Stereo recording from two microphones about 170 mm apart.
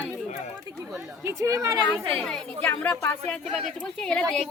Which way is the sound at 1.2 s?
15° right (ahead or behind).